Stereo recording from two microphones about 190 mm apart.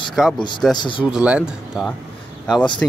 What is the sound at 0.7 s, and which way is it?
Speech, 25° left (ahead or behind).